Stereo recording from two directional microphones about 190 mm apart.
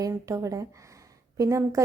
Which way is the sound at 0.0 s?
15° right (ahead or behind).